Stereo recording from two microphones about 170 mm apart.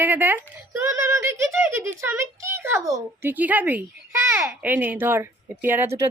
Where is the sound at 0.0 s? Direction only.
10° right (ahead or behind).